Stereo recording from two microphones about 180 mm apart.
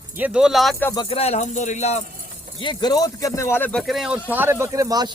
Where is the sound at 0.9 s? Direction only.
25° left (ahead or behind).